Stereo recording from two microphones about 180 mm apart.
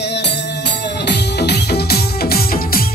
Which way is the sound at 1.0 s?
65° left (ahead or behind).